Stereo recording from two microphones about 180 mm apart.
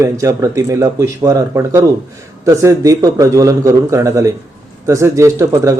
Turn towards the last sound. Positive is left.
turn(degrees=-15)  # may be behind; listen again after turning